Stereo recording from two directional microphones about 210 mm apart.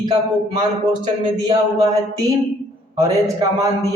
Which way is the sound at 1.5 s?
15° right (ahead or behind).